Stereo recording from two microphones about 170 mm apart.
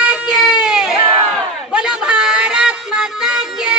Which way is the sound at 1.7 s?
5° right (ahead or behind).